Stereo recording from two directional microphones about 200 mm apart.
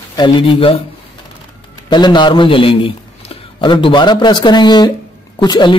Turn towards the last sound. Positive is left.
turn(degrees=20)  # may be behind; listen again after turning